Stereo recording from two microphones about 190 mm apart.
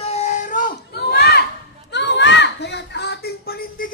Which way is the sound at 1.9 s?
65° left (ahead or behind).